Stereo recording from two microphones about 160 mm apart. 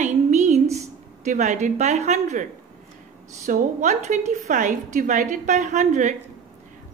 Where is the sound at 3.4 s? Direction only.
45° right (ahead or behind).